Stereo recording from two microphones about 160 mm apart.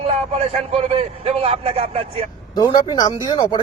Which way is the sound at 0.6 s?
40° right (ahead or behind).